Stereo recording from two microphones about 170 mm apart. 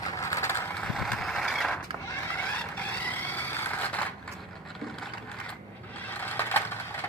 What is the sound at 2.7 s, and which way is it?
Vehicle, 10° left (ahead or behind).